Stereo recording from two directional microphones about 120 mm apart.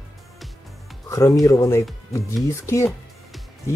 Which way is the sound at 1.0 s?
25° left (ahead or behind).